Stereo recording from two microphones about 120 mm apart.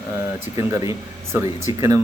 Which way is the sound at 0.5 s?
25° right (ahead or behind).